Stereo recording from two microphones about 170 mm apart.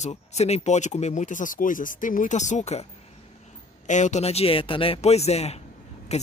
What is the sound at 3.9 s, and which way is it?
Speech, 45° left (ahead or behind).